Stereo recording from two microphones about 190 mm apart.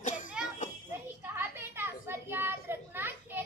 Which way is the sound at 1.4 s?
10° right (ahead or behind).